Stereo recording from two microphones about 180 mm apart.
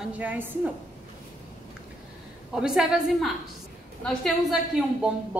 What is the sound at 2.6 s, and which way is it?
A woman's voice, 5° right (ahead or behind).